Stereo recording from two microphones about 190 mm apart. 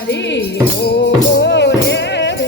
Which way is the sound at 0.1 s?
65° left (ahead or behind).